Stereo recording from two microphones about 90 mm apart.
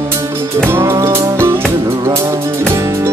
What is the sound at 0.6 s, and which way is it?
Music, 30° right (ahead or behind).